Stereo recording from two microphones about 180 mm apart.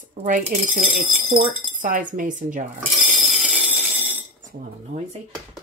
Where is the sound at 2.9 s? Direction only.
Centre (ahead or behind).